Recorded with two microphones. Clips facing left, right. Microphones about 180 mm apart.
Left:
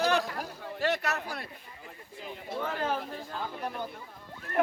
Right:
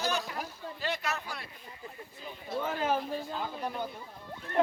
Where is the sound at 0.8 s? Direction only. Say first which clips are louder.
Left 5 dB; 65° left (ahead or behind).